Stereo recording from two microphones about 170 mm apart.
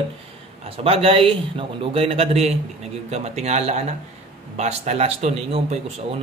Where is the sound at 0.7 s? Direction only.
35° right (ahead or behind).